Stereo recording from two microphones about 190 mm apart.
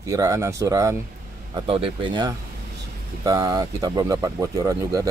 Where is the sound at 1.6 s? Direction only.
30° right (ahead or behind).